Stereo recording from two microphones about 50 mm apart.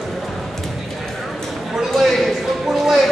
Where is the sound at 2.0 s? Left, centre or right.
Centre.